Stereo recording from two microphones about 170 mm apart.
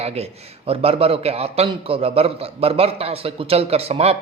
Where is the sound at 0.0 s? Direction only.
35° right (ahead or behind).